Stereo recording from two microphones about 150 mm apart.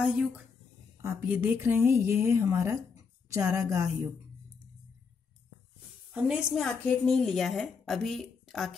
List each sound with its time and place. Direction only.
0.0 s a woman's voice: centre (ahead or behind)
1.0 s a woman's voice: 10° right (ahead or behind)
6.1 s a woman's voice: 5° right (ahead or behind)